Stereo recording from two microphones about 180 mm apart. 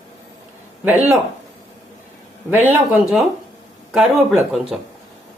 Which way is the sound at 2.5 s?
10° right (ahead or behind).